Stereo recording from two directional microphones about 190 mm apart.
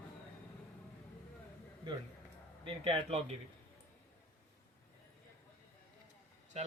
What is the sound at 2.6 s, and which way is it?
Speech, 30° right (ahead or behind).